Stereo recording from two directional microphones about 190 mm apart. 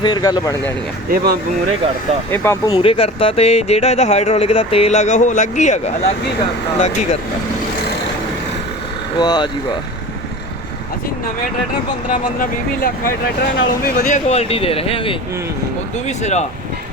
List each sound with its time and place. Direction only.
0.0 s speech: 20° left (ahead or behind)
1.1 s speech: 55° right (ahead or behind)
2.3 s speech: 15° left (ahead or behind)
2.7 s speech: 30° left (ahead or behind)
9.1 s speech: 20° left (ahead or behind)
12.4 s speech: 50° left (ahead or behind)